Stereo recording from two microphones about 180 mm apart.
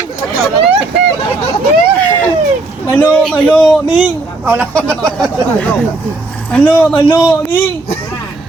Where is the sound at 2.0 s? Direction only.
10° left (ahead or behind).